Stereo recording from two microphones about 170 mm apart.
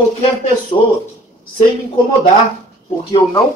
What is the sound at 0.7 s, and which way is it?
Speech, 30° left (ahead or behind).